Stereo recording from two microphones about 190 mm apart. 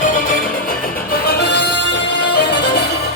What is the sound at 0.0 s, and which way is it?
Music, 45° left (ahead or behind).